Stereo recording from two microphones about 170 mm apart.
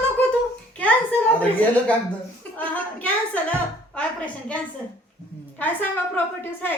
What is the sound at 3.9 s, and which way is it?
Speech, 10° left (ahead or behind).